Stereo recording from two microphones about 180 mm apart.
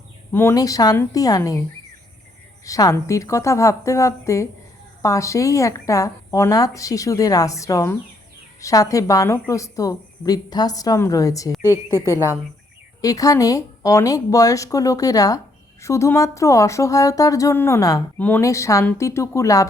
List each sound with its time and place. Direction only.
0.3 s a woman's voice: 15° left (ahead or behind)
2.6 s a woman's voice: 20° left (ahead or behind)
11.6 s a woman's voice: 15° right (ahead or behind)
13.0 s a woman's voice: 20° left (ahead or behind)